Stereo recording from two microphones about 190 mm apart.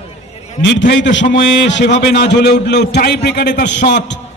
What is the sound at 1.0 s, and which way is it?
A man's voice, 70° left (ahead or behind).